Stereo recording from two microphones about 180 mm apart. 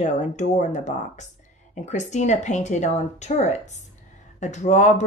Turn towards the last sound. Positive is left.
turn(degrees=40)  # may be behind; listen again after turning